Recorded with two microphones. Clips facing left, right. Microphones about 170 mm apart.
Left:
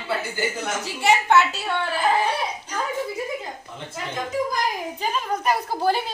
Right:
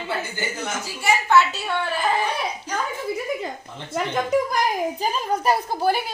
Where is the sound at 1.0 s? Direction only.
30° left (ahead or behind).